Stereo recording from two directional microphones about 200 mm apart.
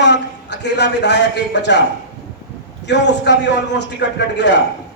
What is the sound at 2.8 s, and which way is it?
A man's voice, 60° left (ahead or behind).